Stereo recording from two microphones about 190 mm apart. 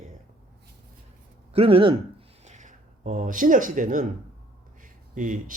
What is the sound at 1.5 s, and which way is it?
Speech, 30° right (ahead or behind).